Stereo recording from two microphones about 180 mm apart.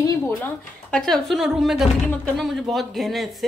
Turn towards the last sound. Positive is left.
turn(degrees=0)  # may be behind; listen again after turning